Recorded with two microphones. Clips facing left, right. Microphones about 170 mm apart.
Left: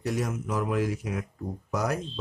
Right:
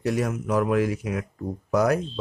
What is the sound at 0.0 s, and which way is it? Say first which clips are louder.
Speech: right 4 dB; 65° right (ahead or behind).